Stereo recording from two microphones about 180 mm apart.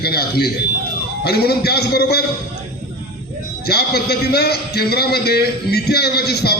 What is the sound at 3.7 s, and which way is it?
A man's voice, 60° left (ahead or behind).